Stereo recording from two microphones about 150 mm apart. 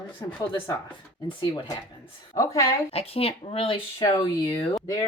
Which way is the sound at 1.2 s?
35° left (ahead or behind).